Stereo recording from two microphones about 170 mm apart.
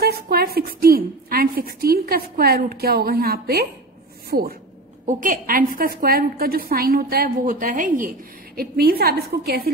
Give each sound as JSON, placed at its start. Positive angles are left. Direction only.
{"t": 0.0, "sound": "a woman's voice", "side_deg": -65}
{"t": 5.0, "sound": "a woman's voice", "side_deg": -50}